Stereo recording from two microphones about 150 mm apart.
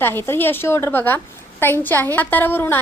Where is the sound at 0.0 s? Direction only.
15° left (ahead or behind).